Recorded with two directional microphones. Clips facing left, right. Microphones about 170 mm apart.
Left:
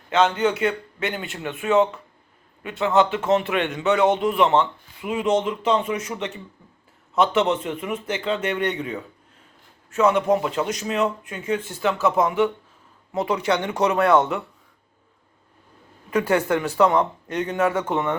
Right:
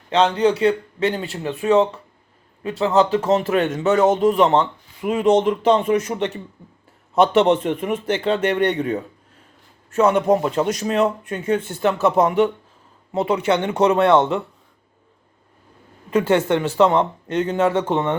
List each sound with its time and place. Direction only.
0.1 s a man's voice: 35° right (ahead or behind); by 6.3 s 55° right (ahead or behind)
7.4 s speech: 55° right (ahead or behind)
8.4 s a man's voice: 35° right (ahead or behind)
10.2 s a man's voice: 30° right (ahead or behind)
11.4 s speech: 50° right (ahead or behind)
13.1 s speech: 30° right (ahead or behind)
16.0 s speech: 25° right (ahead or behind)